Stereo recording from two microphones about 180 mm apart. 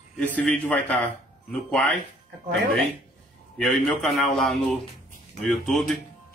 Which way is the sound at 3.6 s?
Centre (ahead or behind).